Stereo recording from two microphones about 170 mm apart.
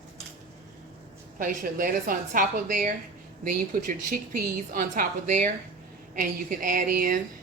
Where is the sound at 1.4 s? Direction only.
50° right (ahead or behind).